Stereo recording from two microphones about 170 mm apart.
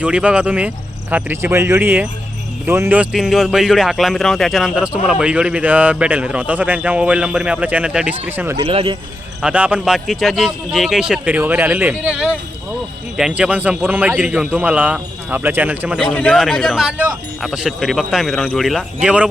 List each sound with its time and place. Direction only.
0.0 s speech: 5° right (ahead or behind)
8.6 s speech: 35° right (ahead or behind)
9.4 s speech: 10° right (ahead or behind)
16.1 s a man's voice: 10° left (ahead or behind); by 19.3 s 5° right (ahead or behind)